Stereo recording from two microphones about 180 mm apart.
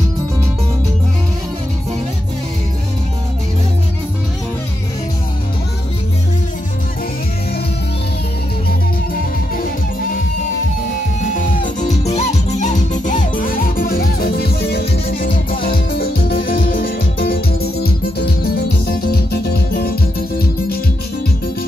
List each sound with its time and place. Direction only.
11.3 s music: 45° left (ahead or behind)